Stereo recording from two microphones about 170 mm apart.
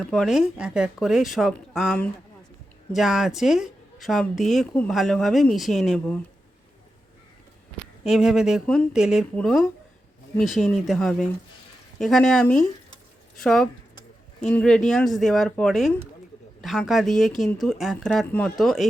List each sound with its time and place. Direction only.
0.0 s speech: centre (ahead or behind)
8.0 s speech: 5° right (ahead or behind)